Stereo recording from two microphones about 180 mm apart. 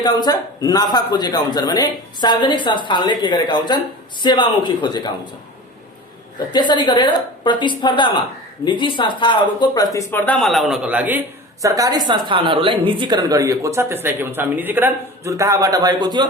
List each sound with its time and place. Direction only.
0.0 s speech: 20° left (ahead or behind)
6.5 s speech: 25° left (ahead or behind); by 11.2 s 10° right (ahead or behind)
11.6 s speech: 20° right (ahead or behind)